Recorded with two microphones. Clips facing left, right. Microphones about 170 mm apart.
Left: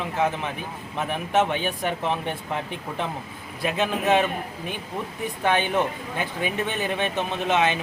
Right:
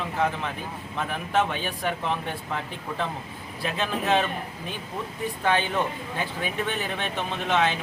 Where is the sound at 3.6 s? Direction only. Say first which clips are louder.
Left 4 dB; 15° left (ahead or behind).